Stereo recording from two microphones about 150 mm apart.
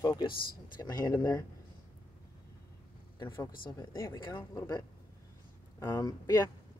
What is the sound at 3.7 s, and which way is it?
Speech, 25° left (ahead or behind).